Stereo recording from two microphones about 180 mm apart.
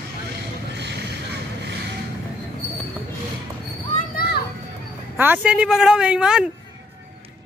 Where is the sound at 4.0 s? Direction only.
55° left (ahead or behind).